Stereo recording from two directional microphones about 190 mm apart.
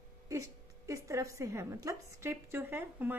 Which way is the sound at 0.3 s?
15° right (ahead or behind).